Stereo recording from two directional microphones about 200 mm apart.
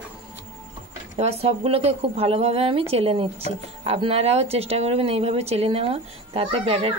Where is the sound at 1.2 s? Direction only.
30° right (ahead or behind).